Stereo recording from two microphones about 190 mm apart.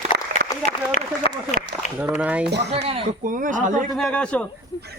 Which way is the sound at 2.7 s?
30° right (ahead or behind).